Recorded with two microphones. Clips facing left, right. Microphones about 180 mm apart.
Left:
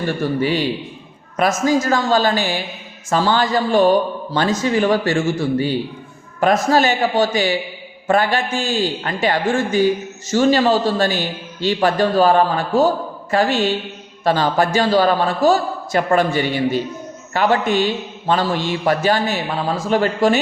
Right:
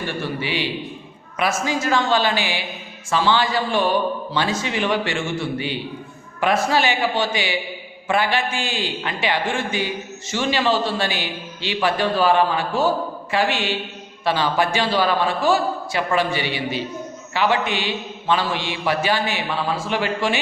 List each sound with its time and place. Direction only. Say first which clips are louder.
0.1 s a man's voice: left 9 dB; 45° left (ahead or behind)